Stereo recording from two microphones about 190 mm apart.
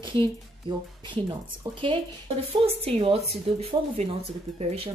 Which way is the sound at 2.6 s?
30° right (ahead or behind).